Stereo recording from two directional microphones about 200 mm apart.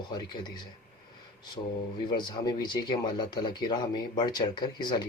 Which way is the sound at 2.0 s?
20° left (ahead or behind).